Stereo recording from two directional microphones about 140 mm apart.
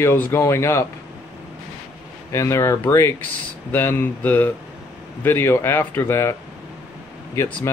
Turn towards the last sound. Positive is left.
turn(degrees=15)  # may be behind; listen again after turning